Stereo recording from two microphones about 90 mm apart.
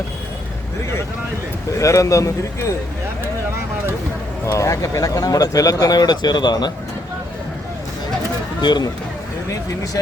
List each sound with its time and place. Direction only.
1.8 s speech: 35° left (ahead or behind)
4.4 s speech: 35° left (ahead or behind); by 6.7 s 50° left (ahead or behind)
8.6 s speech: 50° left (ahead or behind)